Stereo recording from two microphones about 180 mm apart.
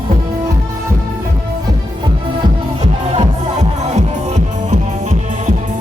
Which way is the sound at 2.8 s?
40° right (ahead or behind).